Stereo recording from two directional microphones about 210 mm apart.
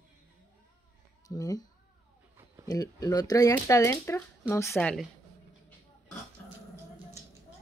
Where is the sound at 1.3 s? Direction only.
15° left (ahead or behind).